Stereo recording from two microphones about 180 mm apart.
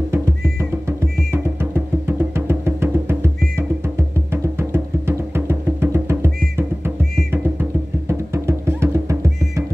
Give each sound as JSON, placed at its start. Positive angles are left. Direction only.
{"t": 0.1, "sound": "music", "side_deg": -15}
{"t": 8.1, "sound": "music", "side_deg": -15}